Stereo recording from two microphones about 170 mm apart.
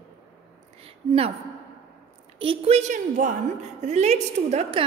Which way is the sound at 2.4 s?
35° right (ahead or behind).